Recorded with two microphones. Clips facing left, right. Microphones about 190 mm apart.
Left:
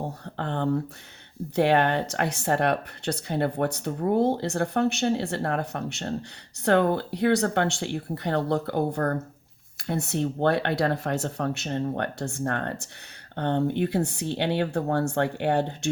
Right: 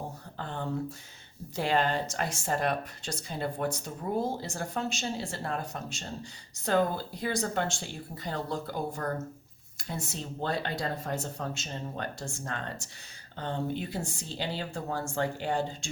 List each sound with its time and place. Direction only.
0.3 s speech: 65° left (ahead or behind)